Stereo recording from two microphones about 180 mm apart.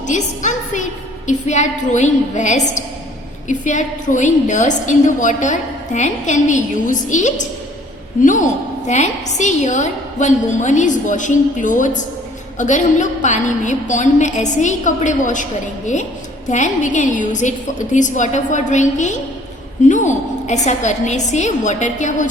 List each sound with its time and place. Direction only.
0.1 s a sound: 40° left (ahead or behind)
1.3 s a woman's voice: 40° left (ahead or behind)
16.5 s a woman's voice: 40° left (ahead or behind)